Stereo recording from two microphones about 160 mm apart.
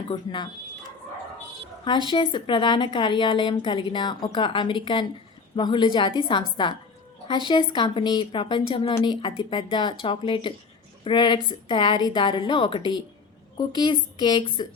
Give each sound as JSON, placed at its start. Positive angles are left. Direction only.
{"t": 0.1, "sound": "a woman's voice", "side_deg": 30}
{"t": 1.8, "sound": "a woman's voice", "side_deg": 30}